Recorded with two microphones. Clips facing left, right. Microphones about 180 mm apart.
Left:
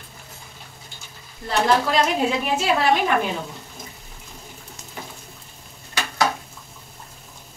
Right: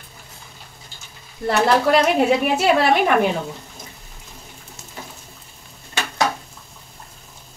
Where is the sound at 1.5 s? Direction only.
65° right (ahead or behind).